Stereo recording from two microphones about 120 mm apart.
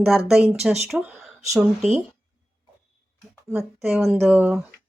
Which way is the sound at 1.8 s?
70° right (ahead or behind).